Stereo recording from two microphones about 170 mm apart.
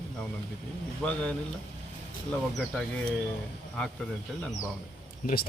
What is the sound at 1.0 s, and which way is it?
Speech, 10° left (ahead or behind).